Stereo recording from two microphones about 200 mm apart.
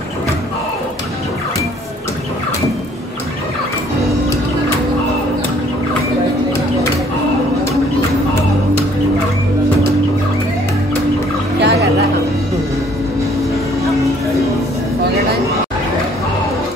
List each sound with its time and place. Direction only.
11.6 s music: 55° right (ahead or behind)